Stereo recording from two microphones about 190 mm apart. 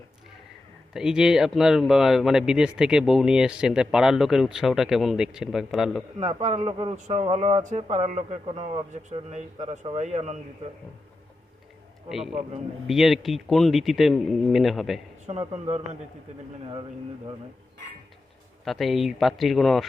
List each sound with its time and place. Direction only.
0.9 s a man's voice: 5° right (ahead or behind)
6.1 s speech: 35° right (ahead or behind)
12.0 s a man's voice: centre (ahead or behind)
15.3 s speech: 30° right (ahead or behind)
18.6 s a man's voice: centre (ahead or behind)